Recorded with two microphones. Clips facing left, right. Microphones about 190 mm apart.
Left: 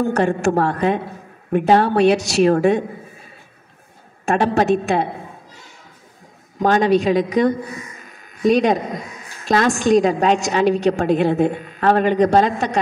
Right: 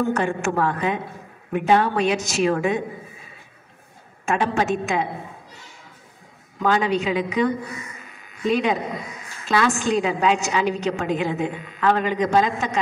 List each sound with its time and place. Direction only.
0.0 s a woman's voice: 40° left (ahead or behind)
4.3 s a woman's voice: 40° left (ahead or behind)
6.6 s a woman's voice: 35° left (ahead or behind)